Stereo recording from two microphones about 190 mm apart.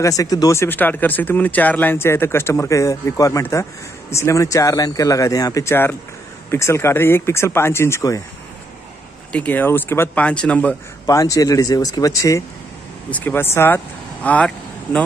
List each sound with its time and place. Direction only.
0.0 s speech: 20° left (ahead or behind)
9.3 s speech: 10° left (ahead or behind)